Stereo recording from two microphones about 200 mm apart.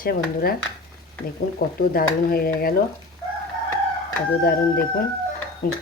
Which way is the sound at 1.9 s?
50° left (ahead or behind).